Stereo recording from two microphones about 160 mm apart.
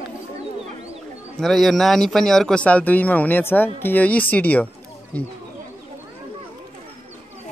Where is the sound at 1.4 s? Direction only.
Centre (ahead or behind).